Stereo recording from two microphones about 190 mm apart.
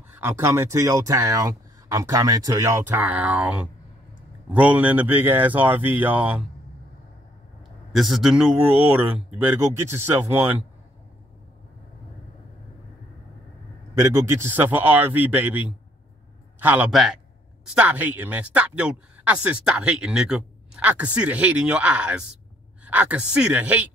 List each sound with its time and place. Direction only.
0.2 s speech: 15° right (ahead or behind)
7.9 s speech: centre (ahead or behind)
14.1 s speech: 15° right (ahead or behind)